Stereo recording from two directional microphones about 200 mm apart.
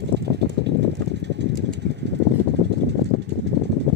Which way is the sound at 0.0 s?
55° right (ahead or behind).